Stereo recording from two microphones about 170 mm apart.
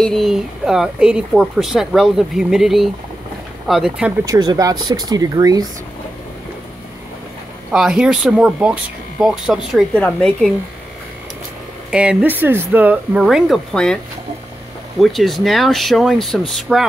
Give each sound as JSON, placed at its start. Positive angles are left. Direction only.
{"t": 0.0, "sound": "speech", "side_deg": 0}
{"t": 4.3, "sound": "speech", "side_deg": -20}
{"t": 7.7, "sound": "speech", "side_deg": -5}
{"t": 11.9, "sound": "speech", "side_deg": -5}
{"t": 15.0, "sound": "speech", "side_deg": 0}